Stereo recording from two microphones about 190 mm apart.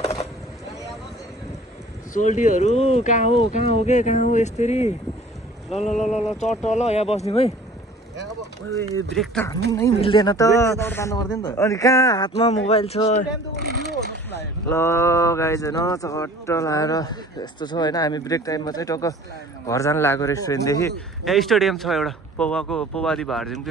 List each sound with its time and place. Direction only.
2.1 s speech: 40° left (ahead or behind)
9.1 s speech: centre (ahead or behind)
9.7 s speech: 15° left (ahead or behind)
12.4 s speech: 35° left (ahead or behind)
14.3 s speech: 15° left (ahead or behind)
21.2 s speech: centre (ahead or behind)